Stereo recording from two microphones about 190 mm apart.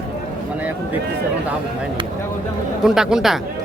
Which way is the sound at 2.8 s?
5° right (ahead or behind).